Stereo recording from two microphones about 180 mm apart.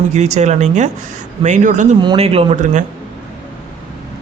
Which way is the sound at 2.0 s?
30° right (ahead or behind).